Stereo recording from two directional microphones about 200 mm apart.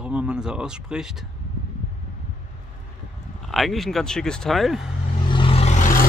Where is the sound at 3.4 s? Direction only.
Centre (ahead or behind).